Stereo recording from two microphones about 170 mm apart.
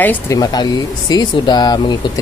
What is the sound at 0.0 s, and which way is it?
Speech, 10° left (ahead or behind).